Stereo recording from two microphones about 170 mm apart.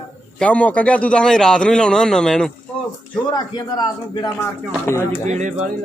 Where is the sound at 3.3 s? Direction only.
25° left (ahead or behind).